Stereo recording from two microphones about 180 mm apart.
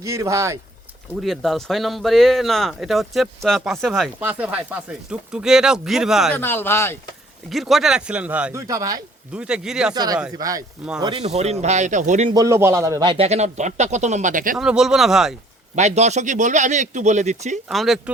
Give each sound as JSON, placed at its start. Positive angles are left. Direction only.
{"t": 0.0, "sound": "speech", "side_deg": -15}
{"t": 1.2, "sound": "speech", "side_deg": 0}
{"t": 4.2, "sound": "speech", "side_deg": -10}
{"t": 6.3, "sound": "speech", "side_deg": 10}
{"t": 7.5, "sound": "speech", "side_deg": 0}
{"t": 8.6, "sound": "speech", "side_deg": -20}
{"t": 9.3, "sound": "speech", "side_deg": -5}
{"t": 9.9, "sound": "speech", "side_deg": -20}
{"t": 11.0, "sound": "speech", "side_deg": -30}
{"t": 12.3, "sound": "speech", "side_deg": -20}
{"t": 14.5, "sound": "speech", "side_deg": -5}
{"t": 15.7, "sound": "speech", "side_deg": -40}
{"t": 17.7, "sound": "speech", "side_deg": 0}